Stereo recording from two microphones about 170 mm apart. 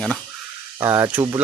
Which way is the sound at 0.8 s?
15° right (ahead or behind).